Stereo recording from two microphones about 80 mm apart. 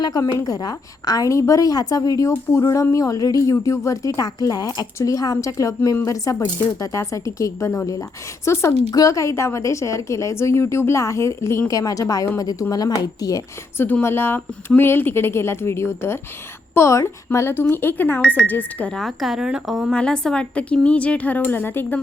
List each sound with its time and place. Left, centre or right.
0.0 s a woman's voice: left
8.9 s a woman's voice: left
11.7 s a woman's voice: left
14.0 s a woman's voice: left
18.9 s speech: centre
19.9 s a woman's voice: centre; by 21.9 s left